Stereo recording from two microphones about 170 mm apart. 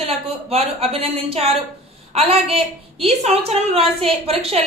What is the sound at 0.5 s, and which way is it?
A woman's voice, 35° right (ahead or behind).